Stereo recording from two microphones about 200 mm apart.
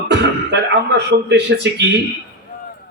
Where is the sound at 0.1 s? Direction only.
60° right (ahead or behind).